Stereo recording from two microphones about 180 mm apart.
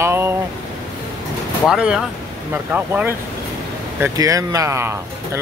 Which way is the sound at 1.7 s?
5° right (ahead or behind).